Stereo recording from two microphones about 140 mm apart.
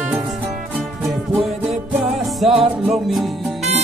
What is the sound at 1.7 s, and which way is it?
Music, 50° right (ahead or behind).